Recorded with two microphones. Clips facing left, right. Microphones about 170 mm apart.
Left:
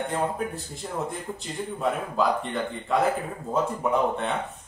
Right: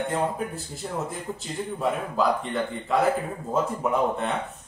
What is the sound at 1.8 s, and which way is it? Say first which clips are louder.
A man's voice: even; centre (ahead or behind).